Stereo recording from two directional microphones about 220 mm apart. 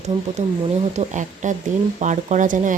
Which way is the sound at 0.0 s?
30° right (ahead or behind).